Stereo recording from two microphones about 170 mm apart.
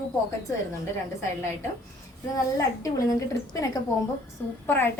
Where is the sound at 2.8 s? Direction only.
20° left (ahead or behind).